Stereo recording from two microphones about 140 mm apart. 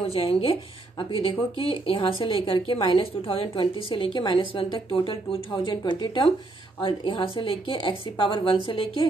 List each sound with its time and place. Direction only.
0.0 s a woman's voice: 40° left (ahead or behind)